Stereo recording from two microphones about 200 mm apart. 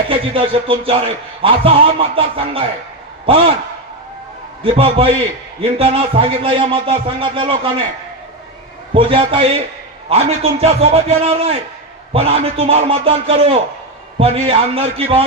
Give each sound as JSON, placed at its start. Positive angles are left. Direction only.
{"t": 0.1, "sound": "a man's voice", "side_deg": -25}
{"t": 4.6, "sound": "a man's voice", "side_deg": -25}
{"t": 8.9, "sound": "a man's voice", "side_deg": -25}